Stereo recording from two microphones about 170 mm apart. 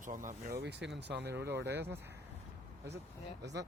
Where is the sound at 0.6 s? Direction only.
90° right.